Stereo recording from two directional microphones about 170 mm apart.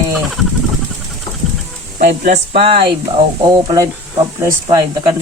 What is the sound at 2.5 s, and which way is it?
Speech, 35° right (ahead or behind).